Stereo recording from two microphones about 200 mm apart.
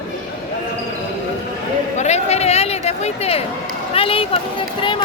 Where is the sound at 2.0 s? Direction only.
35° left (ahead or behind).